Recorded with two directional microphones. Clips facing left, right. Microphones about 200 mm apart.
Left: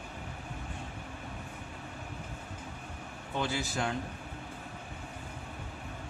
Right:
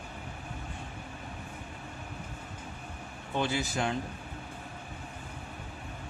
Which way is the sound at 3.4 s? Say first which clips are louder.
Right 2 dB; 20° right (ahead or behind).